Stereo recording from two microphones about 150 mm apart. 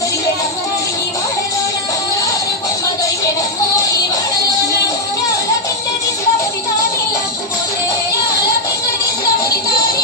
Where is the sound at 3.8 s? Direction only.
25° left (ahead or behind).